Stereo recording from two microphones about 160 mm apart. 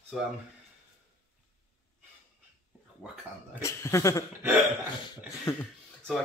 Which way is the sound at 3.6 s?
15° left (ahead or behind).